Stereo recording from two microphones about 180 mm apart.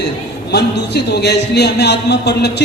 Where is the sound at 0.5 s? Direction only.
65° left (ahead or behind).